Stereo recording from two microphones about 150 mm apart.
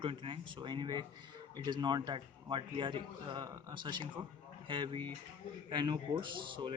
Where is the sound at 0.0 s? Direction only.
35° right (ahead or behind).